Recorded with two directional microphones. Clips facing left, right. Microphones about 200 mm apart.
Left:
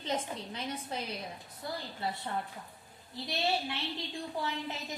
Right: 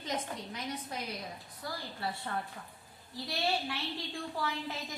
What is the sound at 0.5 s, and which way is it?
A woman's voice, 25° left (ahead or behind).